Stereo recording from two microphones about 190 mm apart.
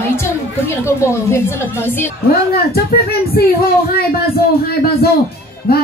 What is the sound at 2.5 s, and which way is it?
Speech, 55° left (ahead or behind).